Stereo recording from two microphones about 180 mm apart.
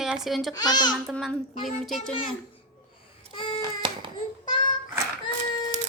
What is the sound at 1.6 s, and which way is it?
Speech, centre (ahead or behind).